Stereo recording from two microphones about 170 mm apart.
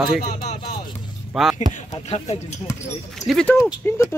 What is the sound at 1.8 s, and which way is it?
Speech, 45° left (ahead or behind).